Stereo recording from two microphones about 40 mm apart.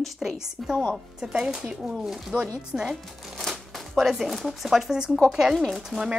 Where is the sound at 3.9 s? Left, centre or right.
Centre.